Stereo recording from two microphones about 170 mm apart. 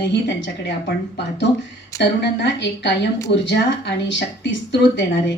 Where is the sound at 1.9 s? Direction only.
80° left.